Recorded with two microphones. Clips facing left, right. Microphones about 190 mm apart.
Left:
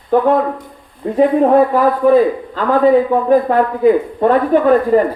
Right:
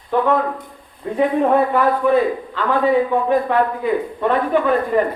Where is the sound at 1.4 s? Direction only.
40° left (ahead or behind).